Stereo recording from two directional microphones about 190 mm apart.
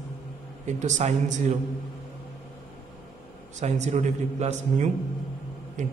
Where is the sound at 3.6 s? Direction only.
35° right (ahead or behind).